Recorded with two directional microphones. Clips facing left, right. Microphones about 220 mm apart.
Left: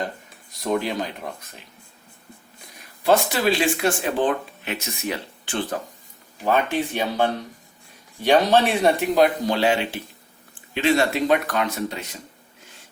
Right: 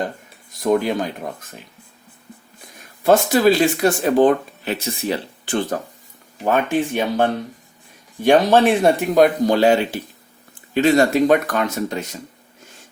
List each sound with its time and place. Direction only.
0.6 s speech: 50° right (ahead or behind)
3.0 s speech: 45° right (ahead or behind)
6.4 s speech: 50° right (ahead or behind)